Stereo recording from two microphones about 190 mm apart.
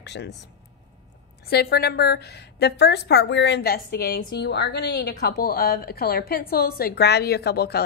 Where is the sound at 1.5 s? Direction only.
55° left (ahead or behind).